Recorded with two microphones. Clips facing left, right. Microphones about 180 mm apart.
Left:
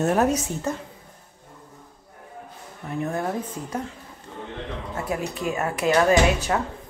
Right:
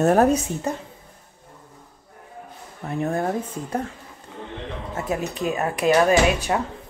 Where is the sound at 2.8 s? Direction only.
45° right (ahead or behind).